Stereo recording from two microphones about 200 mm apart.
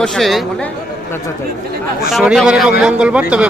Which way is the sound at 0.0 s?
Centre (ahead or behind).